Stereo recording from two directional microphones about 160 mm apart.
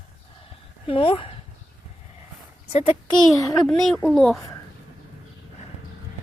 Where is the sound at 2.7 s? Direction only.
40° left (ahead or behind).